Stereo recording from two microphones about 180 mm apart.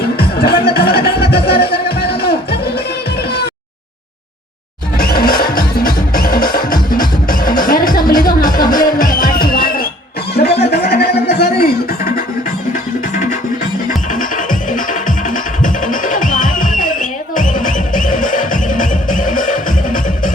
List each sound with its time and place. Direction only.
0.0 s music: 60° left (ahead or behind)
4.9 s music: 55° left (ahead or behind)
10.3 s music: 65° left (ahead or behind)
13.8 s music: 45° left (ahead or behind)